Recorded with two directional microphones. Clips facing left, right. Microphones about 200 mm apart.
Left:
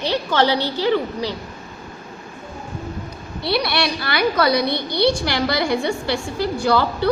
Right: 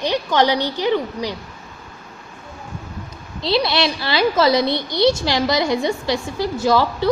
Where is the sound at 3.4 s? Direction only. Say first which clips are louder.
Right 2 dB; 20° right (ahead or behind).